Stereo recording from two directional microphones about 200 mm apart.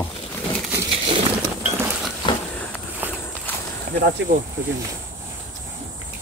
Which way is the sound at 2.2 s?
25° left (ahead or behind).